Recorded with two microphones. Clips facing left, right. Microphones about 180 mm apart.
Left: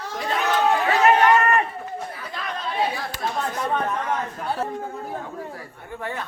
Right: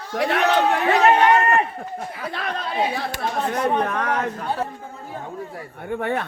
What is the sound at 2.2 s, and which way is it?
Speech, 65° right (ahead or behind).